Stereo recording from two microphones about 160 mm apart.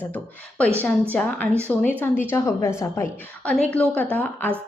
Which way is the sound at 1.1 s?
10° left (ahead or behind).